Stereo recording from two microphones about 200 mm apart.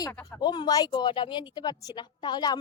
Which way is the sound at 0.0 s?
10° left (ahead or behind).